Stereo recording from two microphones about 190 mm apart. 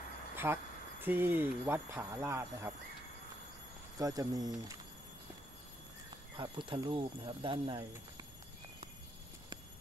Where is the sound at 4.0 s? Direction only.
20° right (ahead or behind).